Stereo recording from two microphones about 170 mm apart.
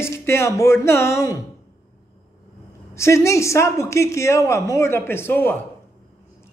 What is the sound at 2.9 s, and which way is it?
A man's voice, 15° left (ahead or behind).